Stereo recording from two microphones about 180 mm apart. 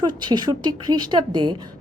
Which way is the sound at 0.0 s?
25° right (ahead or behind).